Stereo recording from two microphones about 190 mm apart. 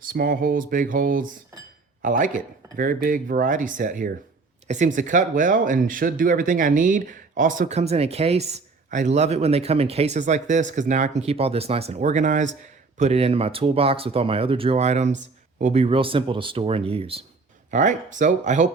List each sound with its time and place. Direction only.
0.1 s speech: 50° right (ahead or behind); by 17.2 s 30° right (ahead or behind)
17.7 s speech: 40° right (ahead or behind)